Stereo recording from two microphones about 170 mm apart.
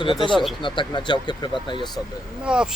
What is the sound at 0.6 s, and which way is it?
Speech, 25° left (ahead or behind).